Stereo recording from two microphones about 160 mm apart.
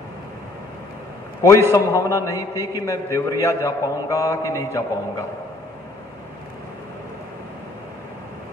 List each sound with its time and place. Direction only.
1.7 s a man's voice: 20° left (ahead or behind)